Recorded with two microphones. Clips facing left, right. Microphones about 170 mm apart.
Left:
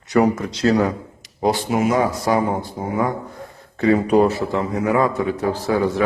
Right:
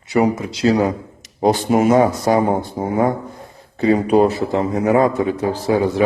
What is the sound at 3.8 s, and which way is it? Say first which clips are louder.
Speech: right 1 dB; 30° right (ahead or behind).